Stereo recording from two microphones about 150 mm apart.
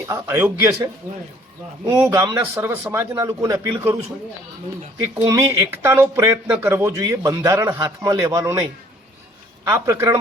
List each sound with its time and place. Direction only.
0.0 s a man's voice: 20° right (ahead or behind)
5.1 s a man's voice: 30° right (ahead or behind)
5.5 s a man's voice: 15° right (ahead or behind)